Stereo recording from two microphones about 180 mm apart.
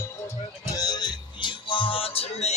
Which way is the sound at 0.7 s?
20° left (ahead or behind).